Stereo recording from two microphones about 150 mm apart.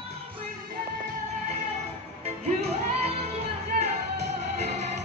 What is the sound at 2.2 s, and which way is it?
Music, 45° right (ahead or behind).